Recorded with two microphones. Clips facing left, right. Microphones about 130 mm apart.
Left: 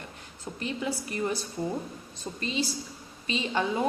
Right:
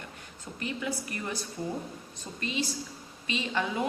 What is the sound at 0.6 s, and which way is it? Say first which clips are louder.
Speech: left 2 dB; 25° left (ahead or behind).